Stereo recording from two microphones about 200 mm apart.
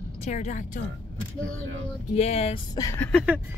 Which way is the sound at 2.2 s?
30° left (ahead or behind).